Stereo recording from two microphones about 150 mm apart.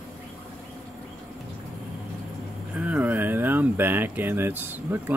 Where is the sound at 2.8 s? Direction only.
10° right (ahead or behind).